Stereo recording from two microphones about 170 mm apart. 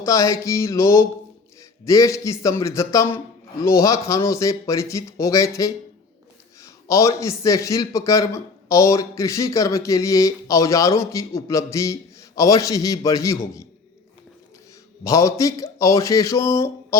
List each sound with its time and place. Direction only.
0.0 s a man's voice: 20° left (ahead or behind)
15.0 s a man's voice: 20° left (ahead or behind)